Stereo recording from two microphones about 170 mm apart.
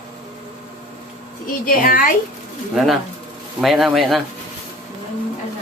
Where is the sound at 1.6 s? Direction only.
60° left (ahead or behind).